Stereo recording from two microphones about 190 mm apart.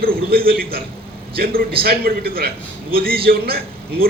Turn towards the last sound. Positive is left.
turn(degrees=-55)  # may be behind; listen again after turning